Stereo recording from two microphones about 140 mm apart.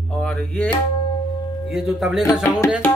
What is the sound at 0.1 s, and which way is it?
Music, 5° left (ahead or behind).